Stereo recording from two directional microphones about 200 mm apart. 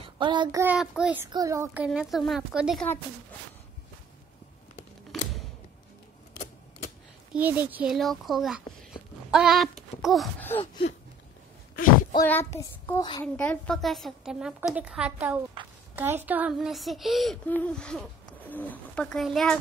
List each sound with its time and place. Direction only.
0.2 s child singing: 25° right (ahead or behind)
0.7 s a woman's voice: 5° right (ahead or behind)
1.9 s a woman's voice: centre (ahead or behind)
5.1 s a sound: centre (ahead or behind)
7.3 s a woman's voice: 10° right (ahead or behind)
8.9 s a sound: centre (ahead or behind)
12.3 s child singing: 15° left (ahead or behind)
13.2 s a woman's voice: 5° left (ahead or behind)